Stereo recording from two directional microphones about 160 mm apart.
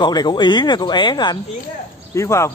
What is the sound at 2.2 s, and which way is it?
Speech, 20° left (ahead or behind).